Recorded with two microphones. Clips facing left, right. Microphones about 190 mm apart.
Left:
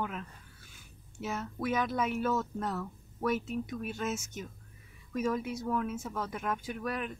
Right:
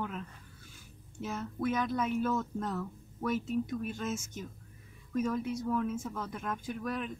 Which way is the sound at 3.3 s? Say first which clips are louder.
Even; 70° left (ahead or behind).